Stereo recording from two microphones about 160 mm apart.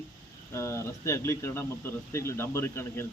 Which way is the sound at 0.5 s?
15° left (ahead or behind).